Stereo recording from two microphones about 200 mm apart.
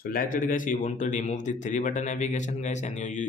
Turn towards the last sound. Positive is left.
turn(degrees=35)  # may be behind; listen again after turning